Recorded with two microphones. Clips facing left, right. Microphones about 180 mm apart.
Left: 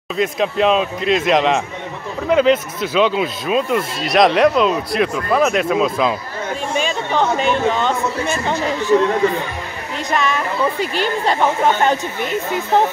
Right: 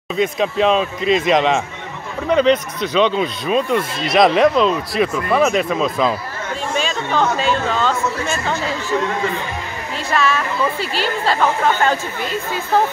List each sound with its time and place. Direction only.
0.1 s speech: centre (ahead or behind)
6.7 s speech: 15° left (ahead or behind)
10.1 s a woman's voice: 15° left (ahead or behind)